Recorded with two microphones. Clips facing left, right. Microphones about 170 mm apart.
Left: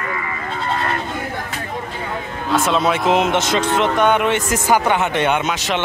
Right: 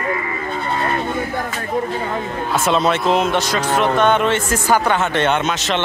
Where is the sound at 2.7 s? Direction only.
10° left (ahead or behind).